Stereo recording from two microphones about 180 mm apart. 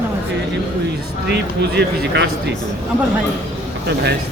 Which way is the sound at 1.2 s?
70° right (ahead or behind).